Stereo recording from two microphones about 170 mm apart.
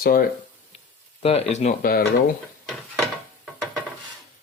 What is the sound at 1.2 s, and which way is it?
Speech, 40° left (ahead or behind).